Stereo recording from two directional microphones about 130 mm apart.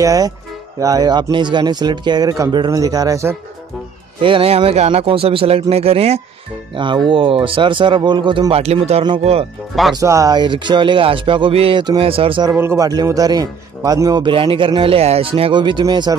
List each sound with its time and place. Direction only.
0.0 s speech: 25° right (ahead or behind)
4.2 s speech: 45° right (ahead or behind)
6.7 s speech: 40° right (ahead or behind)
9.9 s speech: 25° right (ahead or behind); by 12.4 s 45° right (ahead or behind)
12.4 s speech: 20° right (ahead or behind)